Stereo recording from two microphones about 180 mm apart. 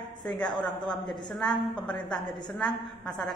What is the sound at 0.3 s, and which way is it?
A man's voice, 5° left (ahead or behind).